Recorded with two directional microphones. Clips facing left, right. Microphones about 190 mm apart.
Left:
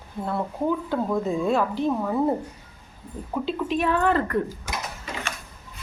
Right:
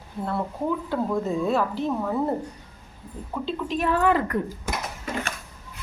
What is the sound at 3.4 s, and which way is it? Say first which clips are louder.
Speech: left 1 dB; 5° left (ahead or behind).